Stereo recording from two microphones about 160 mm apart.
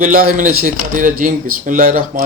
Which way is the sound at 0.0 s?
60° right (ahead or behind).